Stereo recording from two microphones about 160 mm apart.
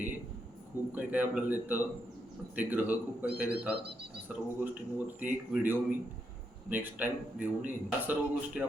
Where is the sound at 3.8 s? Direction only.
90° right.